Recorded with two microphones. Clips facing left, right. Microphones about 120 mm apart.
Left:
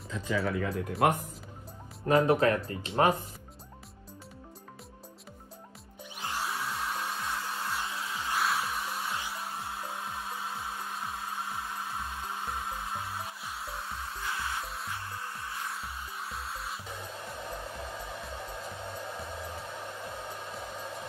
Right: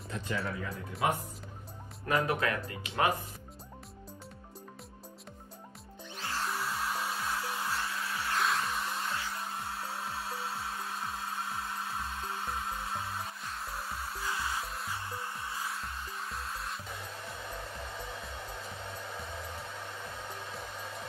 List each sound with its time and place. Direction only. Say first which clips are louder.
0.5 s speech: left 7 dB; 80° left
2.0 s speech: left 6 dB; 30° left (ahead or behind)
6.1 s music: left 1 dB; 15° left (ahead or behind)
6.4 s hair dryer: right 1 dB; centre (ahead or behind)
7.8 s music: even; 15° left (ahead or behind)
8.4 s music: left 1 dB; 5° left (ahead or behind)
9.4 s hair dryer: left 1 dB; 5° left (ahead or behind)
15.0 s music: even; 5° right (ahead or behind)